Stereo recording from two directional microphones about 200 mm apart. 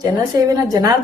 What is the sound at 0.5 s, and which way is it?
Speech, 20° right (ahead or behind).